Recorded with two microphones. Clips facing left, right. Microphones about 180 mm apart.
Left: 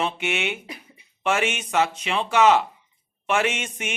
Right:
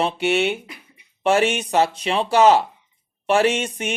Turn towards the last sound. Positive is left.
turn(degrees=-35)  # may be behind; listen again after turning